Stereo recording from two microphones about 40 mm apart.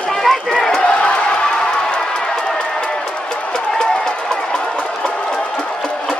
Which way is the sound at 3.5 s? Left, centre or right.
Centre.